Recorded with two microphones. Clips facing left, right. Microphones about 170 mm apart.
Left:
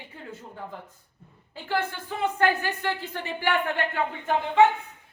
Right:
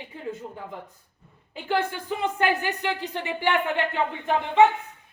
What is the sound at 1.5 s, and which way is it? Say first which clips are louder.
A woman's voice: right 3 dB; 15° right (ahead or behind).